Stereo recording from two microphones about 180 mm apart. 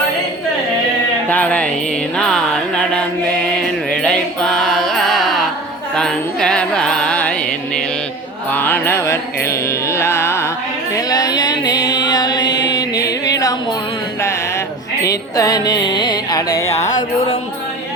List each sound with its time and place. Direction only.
1.3 s music: 10° left (ahead or behind)
8.5 s music: 10° left (ahead or behind)
15.0 s music: 20° left (ahead or behind)